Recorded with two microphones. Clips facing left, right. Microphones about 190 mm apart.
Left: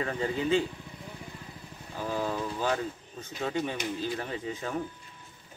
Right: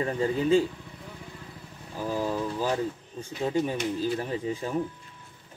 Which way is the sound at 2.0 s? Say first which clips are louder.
Right 3 dB; 10° right (ahead or behind).